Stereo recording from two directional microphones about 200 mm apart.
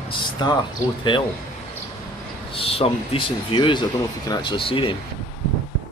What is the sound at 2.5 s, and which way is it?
Speech, 30° left (ahead or behind).